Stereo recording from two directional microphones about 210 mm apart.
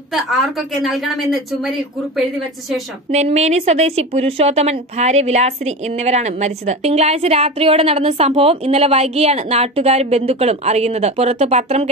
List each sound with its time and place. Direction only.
0.1 s speech: centre (ahead or behind)
3.1 s speech: 30° right (ahead or behind)